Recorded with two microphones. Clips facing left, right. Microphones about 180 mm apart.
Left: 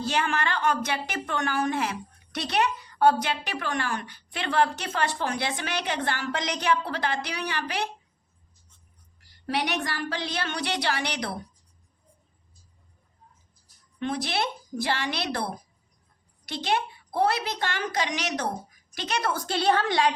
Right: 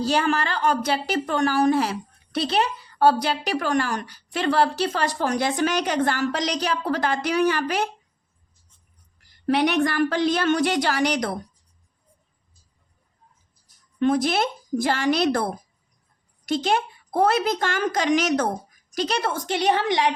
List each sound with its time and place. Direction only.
0.0 s a woman's voice: 35° right (ahead or behind)
9.5 s a woman's voice: 55° right (ahead or behind)
14.0 s a woman's voice: 45° right (ahead or behind)
18.9 s a woman's voice: 40° right (ahead or behind); by 20.1 s 20° right (ahead or behind)